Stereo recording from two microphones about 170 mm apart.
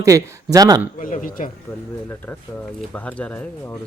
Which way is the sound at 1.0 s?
50° left (ahead or behind).